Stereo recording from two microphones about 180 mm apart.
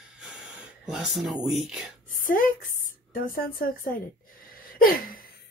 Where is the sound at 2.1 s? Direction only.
50° left (ahead or behind).